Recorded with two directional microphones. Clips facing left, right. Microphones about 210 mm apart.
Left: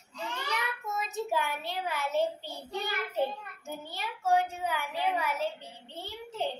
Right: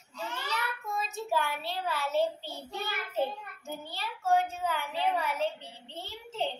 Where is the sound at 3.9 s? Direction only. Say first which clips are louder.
Even; 15° left (ahead or behind).